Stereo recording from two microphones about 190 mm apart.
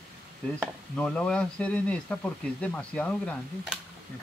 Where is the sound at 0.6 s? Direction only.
5° left (ahead or behind).